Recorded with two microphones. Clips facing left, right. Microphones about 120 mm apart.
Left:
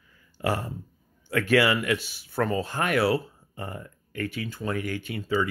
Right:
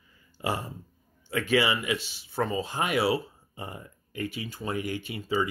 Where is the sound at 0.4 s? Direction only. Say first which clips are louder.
Left 3 dB; 5° right (ahead or behind).